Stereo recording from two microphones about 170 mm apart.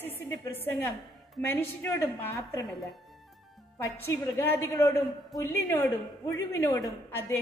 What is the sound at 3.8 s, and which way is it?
A woman's voice, 15° left (ahead or behind).